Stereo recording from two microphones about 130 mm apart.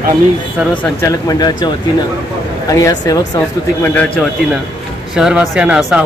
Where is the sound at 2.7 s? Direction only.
30° left (ahead or behind).